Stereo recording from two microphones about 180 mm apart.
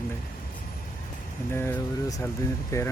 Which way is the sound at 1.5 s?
15° left (ahead or behind).